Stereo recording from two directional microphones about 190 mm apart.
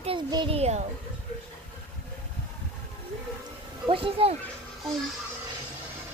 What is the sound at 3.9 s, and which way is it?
Speech, 30° right (ahead or behind).